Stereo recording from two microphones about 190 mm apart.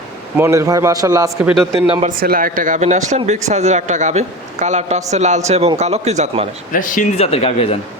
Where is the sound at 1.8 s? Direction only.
30° right (ahead or behind).